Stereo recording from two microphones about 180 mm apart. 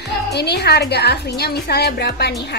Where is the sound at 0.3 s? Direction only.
65° left (ahead or behind).